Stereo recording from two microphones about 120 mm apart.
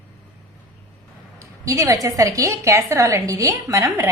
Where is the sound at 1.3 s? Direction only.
25° right (ahead or behind).